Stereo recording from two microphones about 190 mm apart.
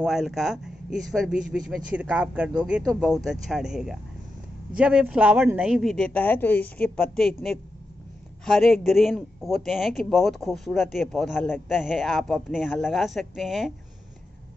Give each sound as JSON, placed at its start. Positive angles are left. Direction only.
{"t": 0.0, "sound": "speech", "side_deg": 0}
{"t": 8.5, "sound": "speech", "side_deg": 0}